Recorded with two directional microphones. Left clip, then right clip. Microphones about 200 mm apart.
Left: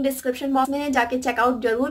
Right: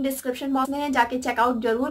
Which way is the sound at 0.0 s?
5° right (ahead or behind).